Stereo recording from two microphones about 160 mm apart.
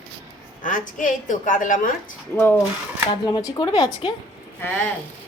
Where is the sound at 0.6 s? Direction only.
55° left (ahead or behind).